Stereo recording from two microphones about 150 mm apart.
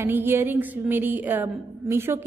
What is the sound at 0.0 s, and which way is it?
A woman's voice, 15° right (ahead or behind).